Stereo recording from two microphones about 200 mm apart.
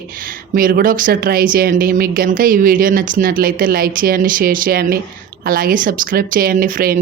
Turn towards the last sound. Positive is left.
turn(degrees=-45)  # may be behind; listen again after turning